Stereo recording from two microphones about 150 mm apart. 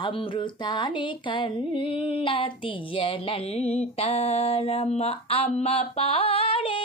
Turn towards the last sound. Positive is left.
turn(degrees=35)  # may be behind; listen again after turning